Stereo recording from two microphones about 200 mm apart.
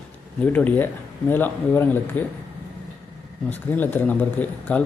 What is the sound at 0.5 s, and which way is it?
Speech, 10° left (ahead or behind).